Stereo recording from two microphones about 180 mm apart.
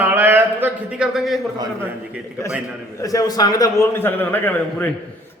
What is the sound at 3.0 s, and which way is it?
A man's voice, 20° left (ahead or behind).